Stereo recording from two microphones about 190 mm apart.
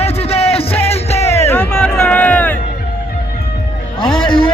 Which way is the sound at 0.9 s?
35° left (ahead or behind).